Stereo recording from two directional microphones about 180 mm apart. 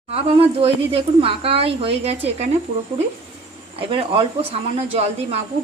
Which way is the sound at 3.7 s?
30° right (ahead or behind).